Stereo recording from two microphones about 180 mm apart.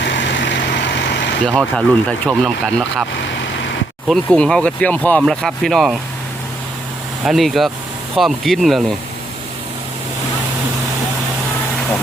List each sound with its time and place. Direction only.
0.0 s vehicle: 80° left
1.5 s speech: 5° left (ahead or behind)
4.1 s speech: centre (ahead or behind)
7.3 s speech: centre (ahead or behind)